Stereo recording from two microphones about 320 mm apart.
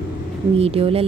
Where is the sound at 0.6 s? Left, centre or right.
Centre.